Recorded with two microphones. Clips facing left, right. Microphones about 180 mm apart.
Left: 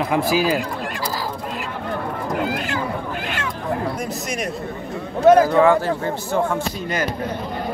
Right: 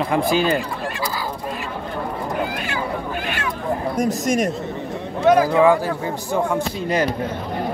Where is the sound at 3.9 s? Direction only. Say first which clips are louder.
Right 7 dB; 45° right (ahead or behind).